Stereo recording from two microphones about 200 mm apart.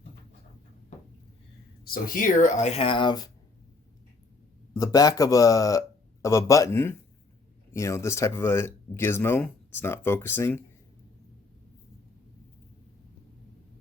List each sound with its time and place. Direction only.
1.8 s speech: 45° left (ahead or behind); by 3.2 s 20° left (ahead or behind)
4.7 s speech: 15° left (ahead or behind)